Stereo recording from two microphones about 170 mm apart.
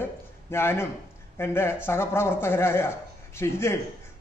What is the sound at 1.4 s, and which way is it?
Speech, 15° left (ahead or behind).